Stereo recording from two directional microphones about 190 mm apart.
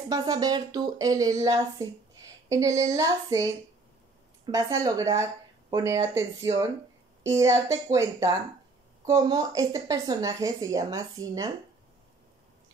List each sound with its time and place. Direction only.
0.1 s speech: 20° right (ahead or behind)